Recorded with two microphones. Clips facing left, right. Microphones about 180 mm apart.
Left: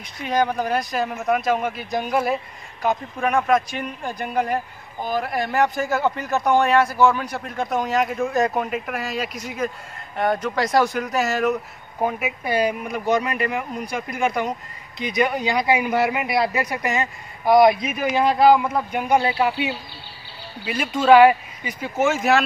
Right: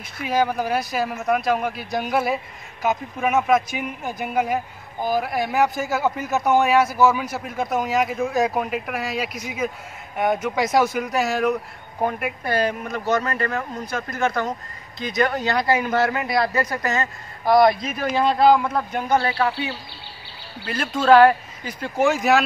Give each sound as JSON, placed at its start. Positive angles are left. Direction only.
{"t": 0.2, "sound": "speech", "side_deg": -5}
{"t": 17.5, "sound": "speech", "side_deg": 5}